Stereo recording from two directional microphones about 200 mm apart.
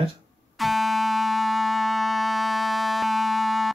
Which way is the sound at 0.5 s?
Centre (ahead or behind).